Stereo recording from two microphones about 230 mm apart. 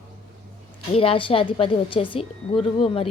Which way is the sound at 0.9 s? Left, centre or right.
Left.